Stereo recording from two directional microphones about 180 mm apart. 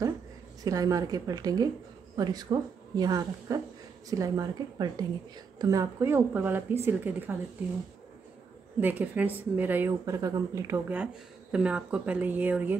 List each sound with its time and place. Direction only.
0.7 s a woman's voice: 20° right (ahead or behind)
8.7 s a woman's voice: 10° right (ahead or behind)